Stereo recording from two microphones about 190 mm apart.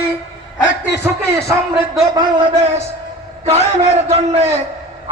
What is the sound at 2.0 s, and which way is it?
Speech, 20° right (ahead or behind).